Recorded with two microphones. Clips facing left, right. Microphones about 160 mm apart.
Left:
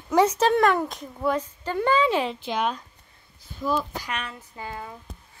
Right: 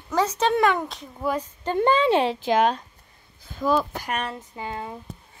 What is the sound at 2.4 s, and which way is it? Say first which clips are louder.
Speech: right 6 dB; 90° right.